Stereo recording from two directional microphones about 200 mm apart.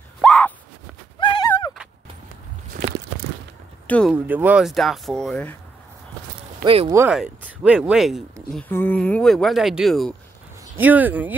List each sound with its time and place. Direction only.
0.2 s a sound: 5° left (ahead or behind)
1.2 s a sound: 20° left (ahead or behind)
3.8 s speech: 5° left (ahead or behind)
4.1 s speech: 10° right (ahead or behind)
6.6 s speech: 30° right (ahead or behind)
6.9 s speech: 10° right (ahead or behind)